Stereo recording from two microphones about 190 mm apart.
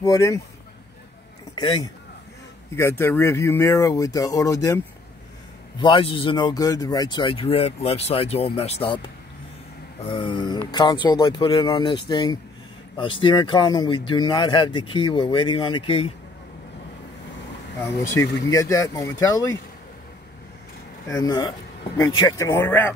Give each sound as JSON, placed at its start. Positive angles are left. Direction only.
{"t": 0.0, "sound": "speech", "side_deg": 15}
{"t": 1.5, "sound": "a man's voice", "side_deg": 25}
{"t": 2.7, "sound": "speech", "side_deg": 10}
{"t": 10.0, "sound": "speech", "side_deg": 25}
{"t": 18.1, "sound": "speech", "side_deg": 15}
{"t": 21.1, "sound": "speech", "side_deg": 20}